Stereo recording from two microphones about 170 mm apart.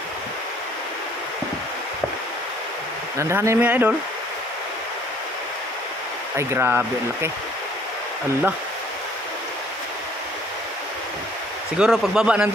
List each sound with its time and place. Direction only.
3.2 s speech: 15° right (ahead or behind)
6.3 s speech: 15° right (ahead or behind)
11.8 s a man's voice: 5° right (ahead or behind)